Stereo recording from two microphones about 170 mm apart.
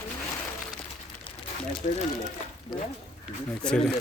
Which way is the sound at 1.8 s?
45° left (ahead or behind).